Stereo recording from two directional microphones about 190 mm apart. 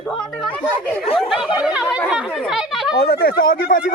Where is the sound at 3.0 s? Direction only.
55° left (ahead or behind).